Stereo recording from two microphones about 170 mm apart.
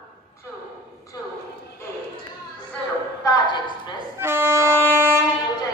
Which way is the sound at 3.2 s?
25° left (ahead or behind).